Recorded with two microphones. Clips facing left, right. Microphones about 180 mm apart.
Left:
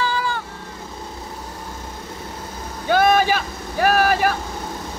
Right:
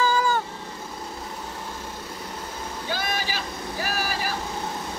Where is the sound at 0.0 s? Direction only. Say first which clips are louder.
Right 1 dB; 45° right (ahead or behind).